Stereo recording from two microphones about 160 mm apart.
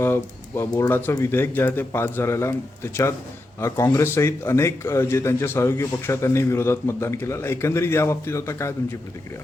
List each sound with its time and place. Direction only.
0.0 s a man's voice: 15° left (ahead or behind)